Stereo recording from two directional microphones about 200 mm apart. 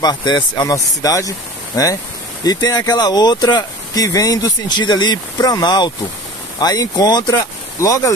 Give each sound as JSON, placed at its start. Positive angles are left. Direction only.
{"t": 0.0, "sound": "speech", "side_deg": 20}
{"t": 2.4, "sound": "speech", "side_deg": 20}